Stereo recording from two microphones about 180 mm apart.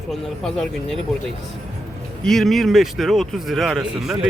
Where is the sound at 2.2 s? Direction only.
Centre (ahead or behind).